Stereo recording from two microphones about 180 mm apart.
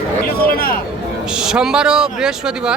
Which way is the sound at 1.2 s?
5° right (ahead or behind).